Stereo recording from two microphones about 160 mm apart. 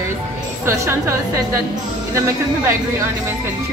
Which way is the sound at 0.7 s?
15° right (ahead or behind).